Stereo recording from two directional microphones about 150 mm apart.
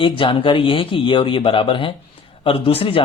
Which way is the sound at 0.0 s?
35° left (ahead or behind).